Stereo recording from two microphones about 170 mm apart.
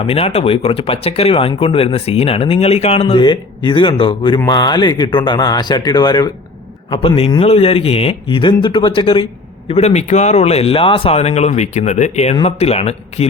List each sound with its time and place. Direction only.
0.1 s speech: 35° left (ahead or behind)
9.6 s speech: 40° left (ahead or behind)